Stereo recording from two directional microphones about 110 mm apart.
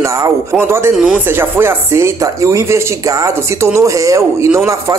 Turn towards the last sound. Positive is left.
turn(degrees=-25)  # may be behind; listen again after turning